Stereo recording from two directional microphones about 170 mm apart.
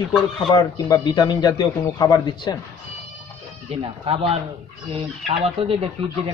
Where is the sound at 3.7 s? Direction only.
35° right (ahead or behind).